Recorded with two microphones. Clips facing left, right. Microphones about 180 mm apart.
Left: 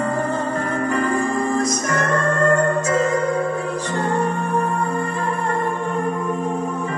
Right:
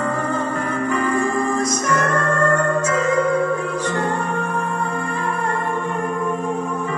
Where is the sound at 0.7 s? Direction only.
40° left (ahead or behind).